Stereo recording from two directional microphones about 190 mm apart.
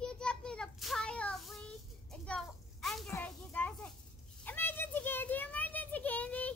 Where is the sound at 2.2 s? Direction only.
5° left (ahead or behind).